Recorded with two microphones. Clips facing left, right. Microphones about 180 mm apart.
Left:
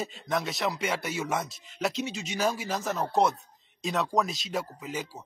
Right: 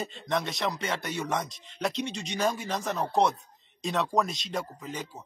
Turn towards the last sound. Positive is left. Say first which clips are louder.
# left 2 dB
turn(degrees=5)  # may be behind; listen again after turning